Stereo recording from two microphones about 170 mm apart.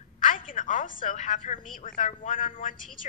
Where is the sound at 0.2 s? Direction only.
50° left (ahead or behind).